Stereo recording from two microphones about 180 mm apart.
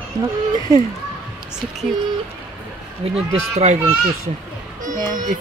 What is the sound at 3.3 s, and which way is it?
Speech, 35° right (ahead or behind).